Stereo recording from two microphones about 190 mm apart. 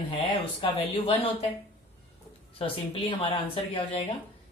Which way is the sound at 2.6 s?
30° left (ahead or behind).